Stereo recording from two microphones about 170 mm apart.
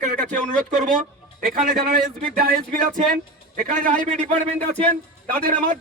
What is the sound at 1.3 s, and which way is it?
A man's voice, 60° right (ahead or behind).